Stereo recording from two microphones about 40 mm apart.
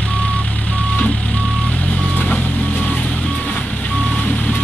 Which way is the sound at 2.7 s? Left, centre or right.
Left.